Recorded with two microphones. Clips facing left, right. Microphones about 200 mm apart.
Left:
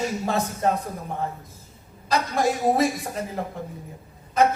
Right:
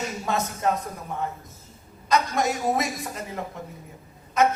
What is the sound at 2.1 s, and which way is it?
A man's voice, 30° left (ahead or behind).